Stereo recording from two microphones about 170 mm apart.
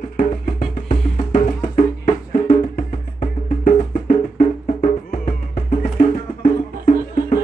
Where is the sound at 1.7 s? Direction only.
40° left (ahead or behind).